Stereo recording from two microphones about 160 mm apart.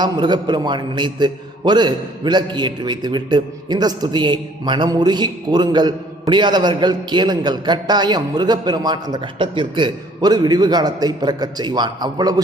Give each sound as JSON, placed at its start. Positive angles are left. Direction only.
{"t": 0.0, "sound": "a man's voice", "side_deg": -25}